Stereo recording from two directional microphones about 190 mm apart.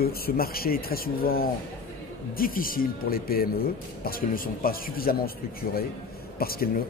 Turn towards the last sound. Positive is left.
turn(degrees=50)  # may be behind; listen again after turning